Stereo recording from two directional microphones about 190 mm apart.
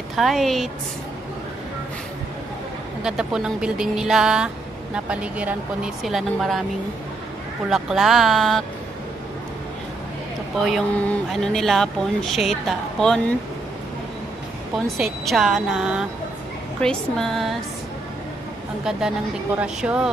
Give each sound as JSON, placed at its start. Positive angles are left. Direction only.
{"t": 0.1, "sound": "speech", "side_deg": 0}
{"t": 3.0, "sound": "speech", "side_deg": -5}
{"t": 7.7, "sound": "speech", "side_deg": 0}
{"t": 10.6, "sound": "speech", "side_deg": 5}
{"t": 15.0, "sound": "speech", "side_deg": 0}
{"t": 18.9, "sound": "speech", "side_deg": -5}